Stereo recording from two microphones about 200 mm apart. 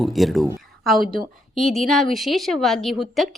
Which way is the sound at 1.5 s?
Centre (ahead or behind).